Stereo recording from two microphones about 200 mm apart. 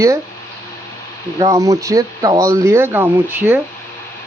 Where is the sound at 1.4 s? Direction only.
15° right (ahead or behind).